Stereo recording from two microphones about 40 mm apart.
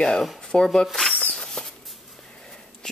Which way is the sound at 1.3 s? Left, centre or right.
Centre.